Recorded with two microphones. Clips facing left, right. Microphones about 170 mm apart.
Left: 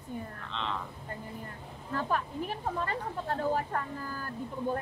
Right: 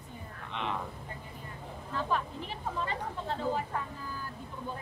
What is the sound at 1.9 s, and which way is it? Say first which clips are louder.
Speech: left 1 dB; 50° left (ahead or behind).